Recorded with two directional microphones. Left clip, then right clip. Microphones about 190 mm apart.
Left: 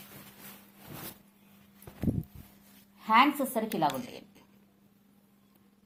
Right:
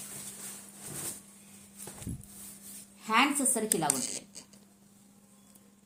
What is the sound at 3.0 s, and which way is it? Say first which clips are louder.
Speech: left 3 dB; 40° left (ahead or behind).